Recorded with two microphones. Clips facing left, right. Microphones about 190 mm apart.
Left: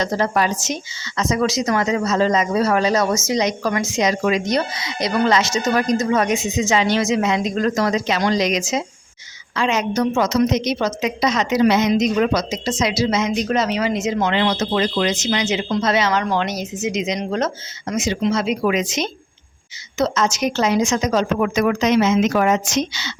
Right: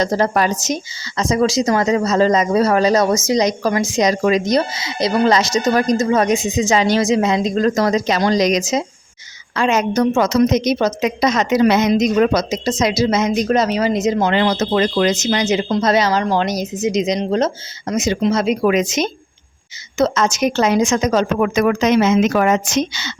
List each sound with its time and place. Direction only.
0.0 s a woman's voice: 40° right (ahead or behind)